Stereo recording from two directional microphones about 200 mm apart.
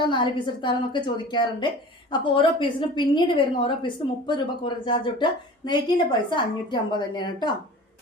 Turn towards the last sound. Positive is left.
turn(degrees=20)  # may be behind; listen again after turning